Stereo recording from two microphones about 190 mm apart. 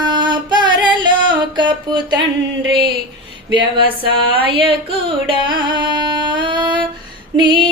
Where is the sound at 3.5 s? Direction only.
25° right (ahead or behind).